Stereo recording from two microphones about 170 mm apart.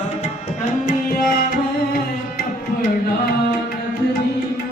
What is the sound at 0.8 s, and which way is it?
Tabla, 55° left (ahead or behind).